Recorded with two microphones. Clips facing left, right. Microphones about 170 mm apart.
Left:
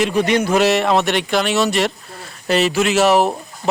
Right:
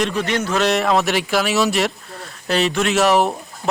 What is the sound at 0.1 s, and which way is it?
Speech, 15° left (ahead or behind).